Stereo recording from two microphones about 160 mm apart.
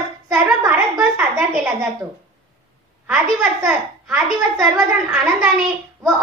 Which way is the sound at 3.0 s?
5° right (ahead or behind).